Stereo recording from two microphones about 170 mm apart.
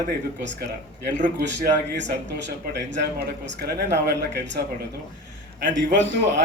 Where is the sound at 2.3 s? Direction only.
90° right.